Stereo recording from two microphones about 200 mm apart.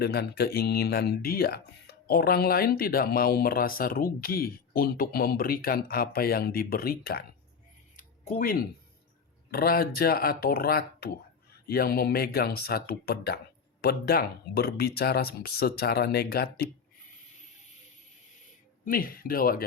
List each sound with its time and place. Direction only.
0.0 s speech: 55° left (ahead or behind)
7.9 s a sound: 40° left (ahead or behind)
9.5 s speech: 50° left (ahead or behind)
18.9 s speech: 45° left (ahead or behind)